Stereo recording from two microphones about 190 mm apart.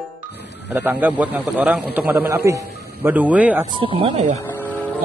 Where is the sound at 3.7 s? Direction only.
25° right (ahead or behind).